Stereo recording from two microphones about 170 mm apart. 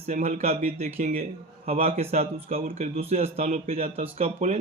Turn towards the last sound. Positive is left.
turn(degrees=-40)  # may be behind; listen again after turning